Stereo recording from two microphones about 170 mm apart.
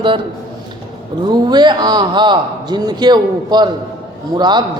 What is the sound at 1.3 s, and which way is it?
A man's voice, 25° right (ahead or behind).